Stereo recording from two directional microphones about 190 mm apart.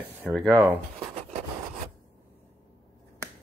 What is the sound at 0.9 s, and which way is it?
Writing, 35° right (ahead or behind).